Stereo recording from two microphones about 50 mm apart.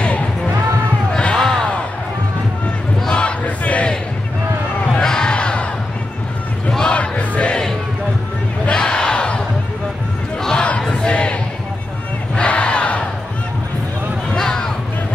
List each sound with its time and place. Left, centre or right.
1.1 s basketball bounce: centre
3.1 s battle cry: left
5.0 s crowd: centre
6.9 s music: left
8.6 s battle cry: centre
10.4 s battle cry: centre
12.4 s battle cry: left
14.3 s a sound: centre